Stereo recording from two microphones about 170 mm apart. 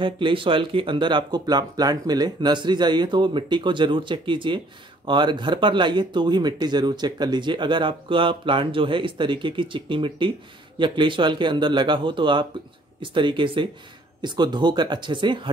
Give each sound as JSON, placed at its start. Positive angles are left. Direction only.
{"t": 0.0, "sound": "speech", "side_deg": -30}